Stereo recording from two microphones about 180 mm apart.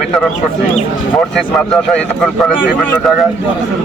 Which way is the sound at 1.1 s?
5° left (ahead or behind).